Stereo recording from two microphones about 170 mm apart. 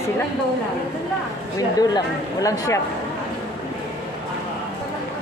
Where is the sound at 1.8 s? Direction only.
20° left (ahead or behind).